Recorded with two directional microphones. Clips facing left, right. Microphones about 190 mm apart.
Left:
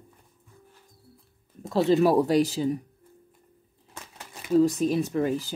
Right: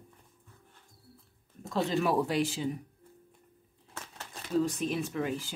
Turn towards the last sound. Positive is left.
turn(degrees=40)  # may be behind; listen again after turning